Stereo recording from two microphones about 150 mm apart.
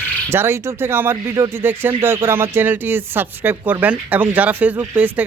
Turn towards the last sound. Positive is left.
turn(degrees=-10)  # may be behind; listen again after turning